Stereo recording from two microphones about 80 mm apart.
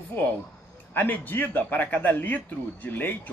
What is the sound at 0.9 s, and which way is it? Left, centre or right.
A man's voice, left.